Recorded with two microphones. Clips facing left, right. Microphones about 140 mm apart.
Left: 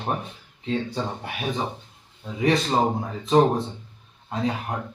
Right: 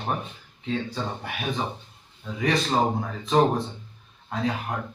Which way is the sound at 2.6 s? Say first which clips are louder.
Left 1 dB; 20° left (ahead or behind).